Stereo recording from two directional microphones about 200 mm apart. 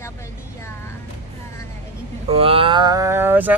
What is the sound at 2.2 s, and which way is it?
Speech, 30° right (ahead or behind).